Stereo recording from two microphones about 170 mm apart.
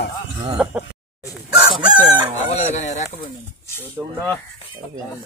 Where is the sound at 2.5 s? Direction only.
40° left (ahead or behind).